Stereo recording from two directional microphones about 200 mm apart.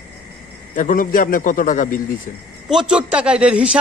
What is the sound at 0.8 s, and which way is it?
A man's voice, 40° left (ahead or behind).